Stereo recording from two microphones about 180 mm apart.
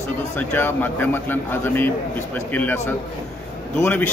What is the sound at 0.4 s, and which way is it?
A man's voice, 10° left (ahead or behind).